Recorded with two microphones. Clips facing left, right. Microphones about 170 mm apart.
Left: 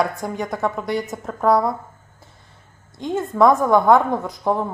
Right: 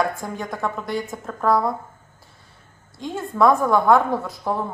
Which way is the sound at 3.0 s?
20° left (ahead or behind).